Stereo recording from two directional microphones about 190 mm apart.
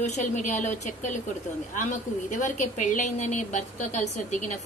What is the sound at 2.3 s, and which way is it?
A woman's voice, 40° left (ahead or behind).